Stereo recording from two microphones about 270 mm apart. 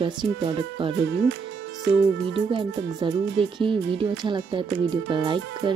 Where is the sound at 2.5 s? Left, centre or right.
Centre.